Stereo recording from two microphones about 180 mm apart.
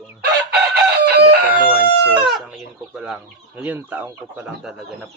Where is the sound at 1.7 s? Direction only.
5° right (ahead or behind).